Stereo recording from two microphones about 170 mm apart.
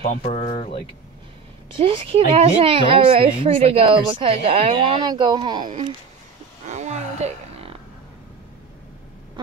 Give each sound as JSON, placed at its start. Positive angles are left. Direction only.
{"t": 0.2, "sound": "speech", "side_deg": 40}
{"t": 1.7, "sound": "a woman's voice", "side_deg": -30}
{"t": 6.6, "sound": "a sound", "side_deg": -45}